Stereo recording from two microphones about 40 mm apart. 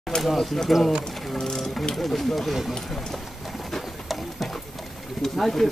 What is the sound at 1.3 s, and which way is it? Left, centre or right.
Speech, centre.